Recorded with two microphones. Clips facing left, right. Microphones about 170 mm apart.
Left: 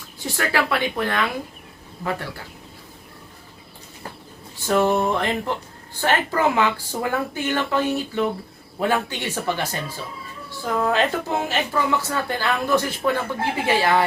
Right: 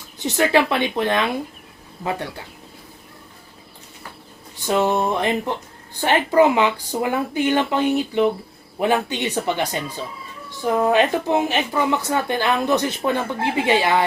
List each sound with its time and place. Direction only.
0.2 s speech: 20° right (ahead or behind)
4.6 s speech: 20° right (ahead or behind)